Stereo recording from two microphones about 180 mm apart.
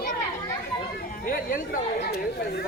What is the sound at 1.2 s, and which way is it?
Speech, 50° left (ahead or behind).